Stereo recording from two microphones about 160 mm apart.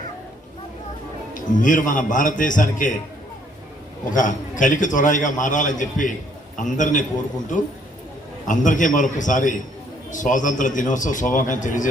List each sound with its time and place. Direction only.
1.3 s a man's voice: 55° left (ahead or behind)
4.1 s a man's voice: 55° left (ahead or behind)
8.4 s a man's voice: 50° left (ahead or behind)